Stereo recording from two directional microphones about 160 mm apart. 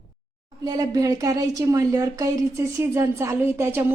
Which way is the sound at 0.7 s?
20° right (ahead or behind).